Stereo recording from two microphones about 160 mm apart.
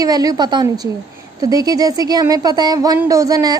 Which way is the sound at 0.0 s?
25° right (ahead or behind).